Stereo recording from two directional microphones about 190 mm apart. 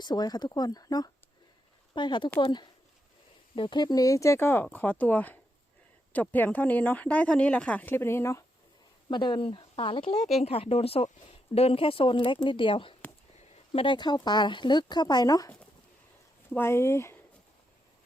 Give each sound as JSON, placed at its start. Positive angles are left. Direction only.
{"t": 0.0, "sound": "speech", "side_deg": 20}